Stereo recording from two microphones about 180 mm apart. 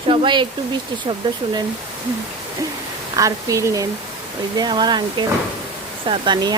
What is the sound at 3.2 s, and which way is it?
Speech, 15° right (ahead or behind).